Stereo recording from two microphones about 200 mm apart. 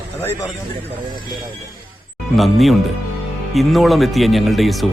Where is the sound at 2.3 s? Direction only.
Centre (ahead or behind).